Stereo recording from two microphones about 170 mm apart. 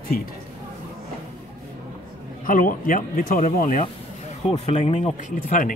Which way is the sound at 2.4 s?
55° left (ahead or behind).